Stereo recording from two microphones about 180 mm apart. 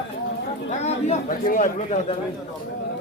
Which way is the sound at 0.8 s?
45° left (ahead or behind).